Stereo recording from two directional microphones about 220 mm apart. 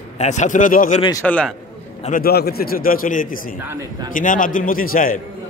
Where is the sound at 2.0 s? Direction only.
40° left (ahead or behind).